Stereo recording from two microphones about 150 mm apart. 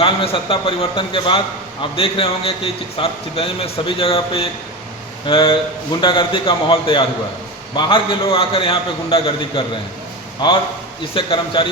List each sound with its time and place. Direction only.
0.0 s a man's voice: 35° left (ahead or behind)
11.1 s a man's voice: 35° left (ahead or behind)